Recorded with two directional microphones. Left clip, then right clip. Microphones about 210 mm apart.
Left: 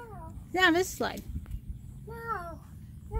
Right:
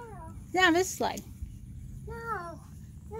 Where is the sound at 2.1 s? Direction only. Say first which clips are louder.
Even; 5° right (ahead or behind).